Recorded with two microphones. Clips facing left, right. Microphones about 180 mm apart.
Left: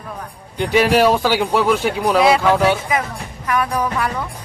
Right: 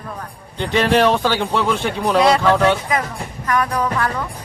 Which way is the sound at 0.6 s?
10° left (ahead or behind).